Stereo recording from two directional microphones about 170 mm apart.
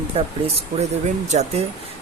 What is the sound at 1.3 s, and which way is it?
Speech, 40° right (ahead or behind).